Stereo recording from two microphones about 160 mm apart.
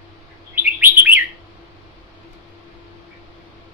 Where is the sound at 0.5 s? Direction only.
15° right (ahead or behind).